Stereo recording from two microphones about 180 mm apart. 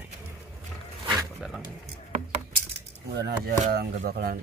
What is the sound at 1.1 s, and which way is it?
Dog, centre (ahead or behind).